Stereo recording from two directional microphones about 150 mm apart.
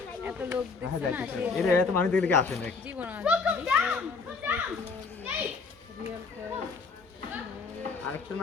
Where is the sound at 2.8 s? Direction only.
10° right (ahead or behind).